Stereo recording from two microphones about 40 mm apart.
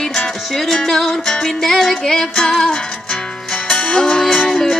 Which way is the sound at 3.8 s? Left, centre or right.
Left.